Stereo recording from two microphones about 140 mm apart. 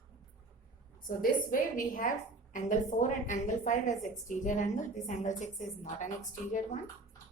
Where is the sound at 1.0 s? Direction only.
85° left; by 5.6 s 60° left (ahead or behind).